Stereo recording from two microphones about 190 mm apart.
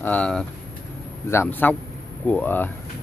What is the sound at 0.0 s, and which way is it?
Speech, 5° left (ahead or behind).